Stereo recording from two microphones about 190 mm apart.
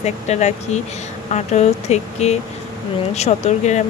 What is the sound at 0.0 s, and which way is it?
Speech, 35° left (ahead or behind).